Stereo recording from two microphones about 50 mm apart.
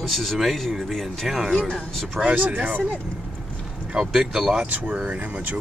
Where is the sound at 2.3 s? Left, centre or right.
Right.